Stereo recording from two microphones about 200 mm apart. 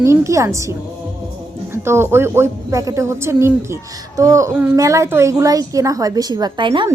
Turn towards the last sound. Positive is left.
turn(degrees=-25)  # may be behind; listen again after turning